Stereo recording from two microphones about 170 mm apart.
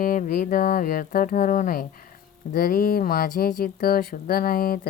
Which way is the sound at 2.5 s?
60° left (ahead or behind).